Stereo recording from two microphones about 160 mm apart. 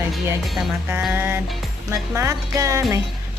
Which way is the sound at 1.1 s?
15° right (ahead or behind).